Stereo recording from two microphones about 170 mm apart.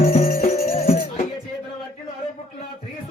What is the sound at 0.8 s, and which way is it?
Music, 40° left (ahead or behind).